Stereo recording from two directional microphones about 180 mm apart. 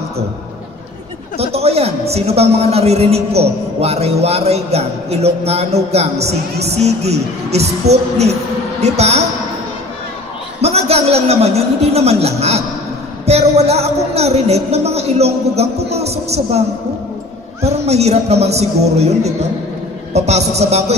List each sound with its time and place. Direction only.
1.4 s a man's voice: 35° right (ahead or behind)
10.6 s a man's voice: 35° right (ahead or behind)
17.6 s a man's voice: 35° right (ahead or behind)